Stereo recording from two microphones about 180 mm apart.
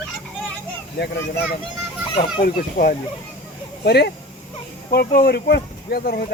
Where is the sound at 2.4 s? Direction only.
55° left (ahead or behind).